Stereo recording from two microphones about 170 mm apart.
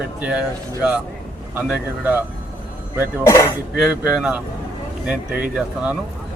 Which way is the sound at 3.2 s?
20° left (ahead or behind).